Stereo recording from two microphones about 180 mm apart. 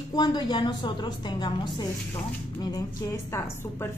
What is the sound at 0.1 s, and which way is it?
A woman's voice, 25° left (ahead or behind).